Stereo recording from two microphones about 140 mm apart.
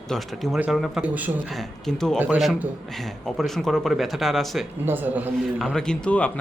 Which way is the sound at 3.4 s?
Centre (ahead or behind).